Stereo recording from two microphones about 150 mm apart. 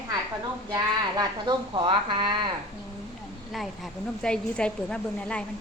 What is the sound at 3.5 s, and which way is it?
A woman's voice, centre (ahead or behind).